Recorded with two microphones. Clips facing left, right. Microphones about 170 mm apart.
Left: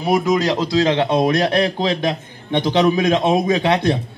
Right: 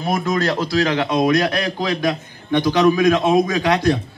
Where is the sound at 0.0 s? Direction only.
10° left (ahead or behind).